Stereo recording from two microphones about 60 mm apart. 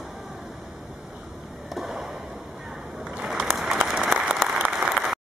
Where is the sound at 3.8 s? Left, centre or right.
Centre.